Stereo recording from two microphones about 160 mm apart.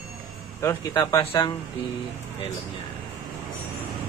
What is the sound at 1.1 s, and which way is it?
Speech, 30° left (ahead or behind).